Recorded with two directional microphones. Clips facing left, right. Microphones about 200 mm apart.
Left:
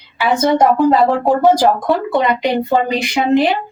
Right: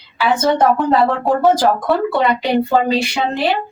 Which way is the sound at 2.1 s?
15° left (ahead or behind).